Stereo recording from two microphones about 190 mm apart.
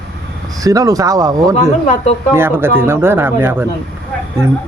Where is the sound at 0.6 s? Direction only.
20° right (ahead or behind).